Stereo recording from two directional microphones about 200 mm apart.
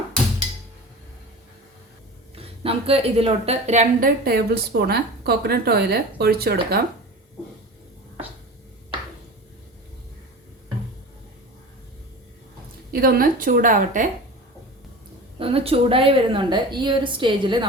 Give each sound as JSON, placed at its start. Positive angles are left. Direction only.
{"t": 2.3, "sound": "a woman's voice", "side_deg": -30}
{"t": 12.9, "sound": "a woman's voice", "side_deg": -50}
{"t": 15.4, "sound": "a woman's voice", "side_deg": -30}